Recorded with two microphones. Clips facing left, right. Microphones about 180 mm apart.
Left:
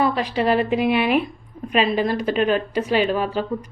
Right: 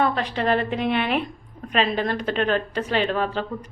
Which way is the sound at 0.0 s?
10° left (ahead or behind).